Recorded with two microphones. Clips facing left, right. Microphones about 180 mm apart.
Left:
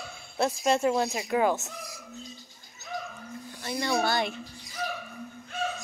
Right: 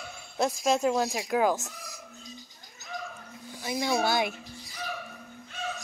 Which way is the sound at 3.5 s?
10° right (ahead or behind).